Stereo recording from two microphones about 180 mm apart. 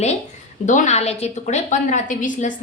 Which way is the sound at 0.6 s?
45° left (ahead or behind).